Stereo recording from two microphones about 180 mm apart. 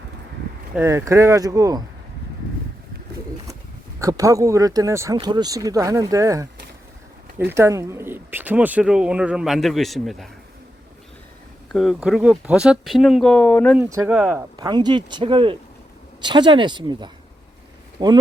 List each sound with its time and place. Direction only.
0.8 s speech: 15° right (ahead or behind)
4.0 s speech: 15° right (ahead or behind); by 10.2 s centre (ahead or behind)
11.7 s speech: centre (ahead or behind)
13.7 s speech: 10° right (ahead or behind)
14.5 s speech: 25° right (ahead or behind)